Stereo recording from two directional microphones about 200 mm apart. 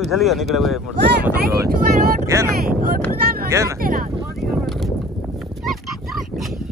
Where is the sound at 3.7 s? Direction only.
45° right (ahead or behind).